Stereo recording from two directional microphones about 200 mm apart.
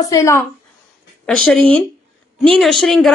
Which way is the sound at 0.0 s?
15° left (ahead or behind).